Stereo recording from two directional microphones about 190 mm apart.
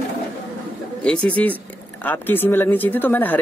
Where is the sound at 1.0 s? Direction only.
5° left (ahead or behind).